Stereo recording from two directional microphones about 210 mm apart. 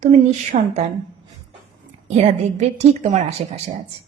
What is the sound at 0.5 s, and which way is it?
Speech, 35° right (ahead or behind).